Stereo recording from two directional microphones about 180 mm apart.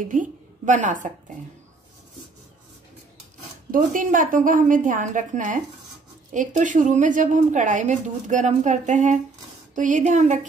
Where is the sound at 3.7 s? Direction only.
45° right (ahead or behind).